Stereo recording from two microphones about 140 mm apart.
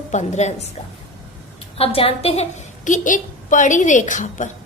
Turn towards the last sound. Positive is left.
turn(degrees=65)  # may be behind; listen again after turning